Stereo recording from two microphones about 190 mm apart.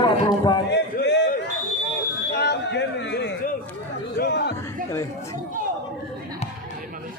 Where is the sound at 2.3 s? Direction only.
60° left (ahead or behind).